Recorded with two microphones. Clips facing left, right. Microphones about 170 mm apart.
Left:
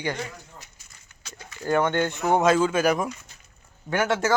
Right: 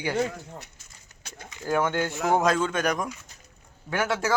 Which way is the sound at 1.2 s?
50° right (ahead or behind).